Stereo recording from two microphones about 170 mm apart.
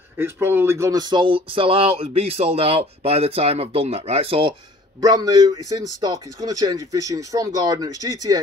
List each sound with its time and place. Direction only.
0.2 s speech: 15° right (ahead or behind); by 4.6 s 30° right (ahead or behind)
5.0 s speech: 20° right (ahead or behind)